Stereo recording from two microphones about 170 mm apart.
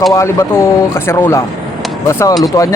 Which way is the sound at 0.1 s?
15° left (ahead or behind).